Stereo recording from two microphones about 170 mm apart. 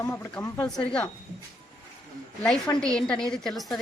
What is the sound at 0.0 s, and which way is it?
A woman's voice, 15° left (ahead or behind).